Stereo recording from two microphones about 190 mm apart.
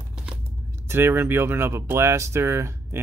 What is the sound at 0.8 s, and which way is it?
Speech, 10° right (ahead or behind).